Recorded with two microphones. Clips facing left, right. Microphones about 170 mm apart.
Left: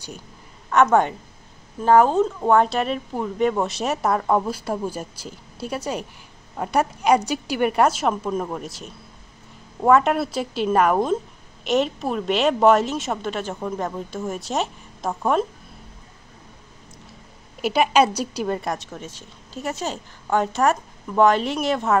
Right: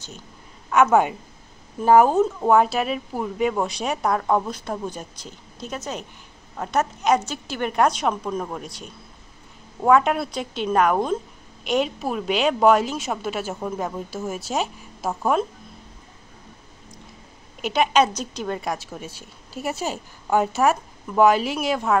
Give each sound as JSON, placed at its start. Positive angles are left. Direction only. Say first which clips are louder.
{"t": 0.7, "sound": "a woman's voice", "louder": "even", "side_deg": -5}
{"t": 17.6, "sound": "a woman's voice", "louder": "left 1 dB", "side_deg": 5}